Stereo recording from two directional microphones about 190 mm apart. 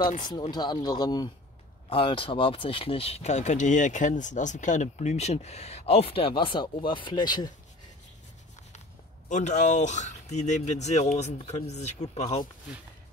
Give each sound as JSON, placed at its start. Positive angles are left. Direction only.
{"t": 0.2, "sound": "speech", "side_deg": 20}
{"t": 9.3, "sound": "speech", "side_deg": 40}